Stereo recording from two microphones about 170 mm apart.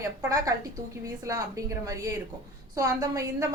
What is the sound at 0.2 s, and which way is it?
A woman's voice, 20° right (ahead or behind).